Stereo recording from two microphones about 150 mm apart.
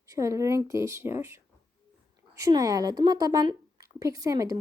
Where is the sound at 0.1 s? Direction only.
20° right (ahead or behind).